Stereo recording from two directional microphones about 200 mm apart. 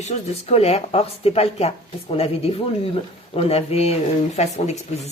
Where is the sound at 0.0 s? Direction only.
35° left (ahead or behind).